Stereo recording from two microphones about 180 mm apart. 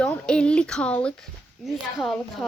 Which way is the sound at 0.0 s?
5° left (ahead or behind).